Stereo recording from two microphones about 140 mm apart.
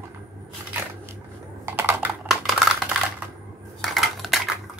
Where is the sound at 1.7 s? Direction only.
15° right (ahead or behind).